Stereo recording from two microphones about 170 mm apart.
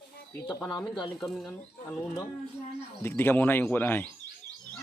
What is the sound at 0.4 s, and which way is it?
Speech, 20° left (ahead or behind).